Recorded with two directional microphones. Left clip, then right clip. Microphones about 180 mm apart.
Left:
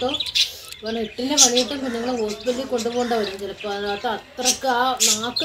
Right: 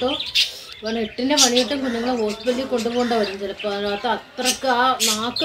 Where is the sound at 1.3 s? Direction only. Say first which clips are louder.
Even; 15° right (ahead or behind).